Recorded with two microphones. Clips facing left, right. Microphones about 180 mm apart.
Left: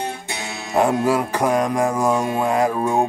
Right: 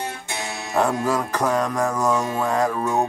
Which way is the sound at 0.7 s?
10° left (ahead or behind).